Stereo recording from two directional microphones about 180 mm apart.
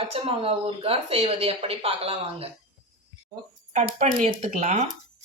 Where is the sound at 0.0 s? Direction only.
30° right (ahead or behind).